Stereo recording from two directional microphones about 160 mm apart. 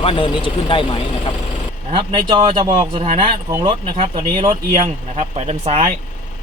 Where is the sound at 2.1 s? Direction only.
30° right (ahead or behind).